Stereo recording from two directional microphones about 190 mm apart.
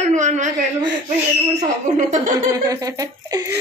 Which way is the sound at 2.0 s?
40° right (ahead or behind).